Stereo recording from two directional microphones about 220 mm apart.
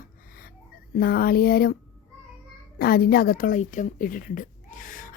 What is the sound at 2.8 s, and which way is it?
A woman's voice, 40° left (ahead or behind).